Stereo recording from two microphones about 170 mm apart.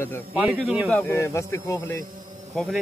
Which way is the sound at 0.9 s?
15° left (ahead or behind).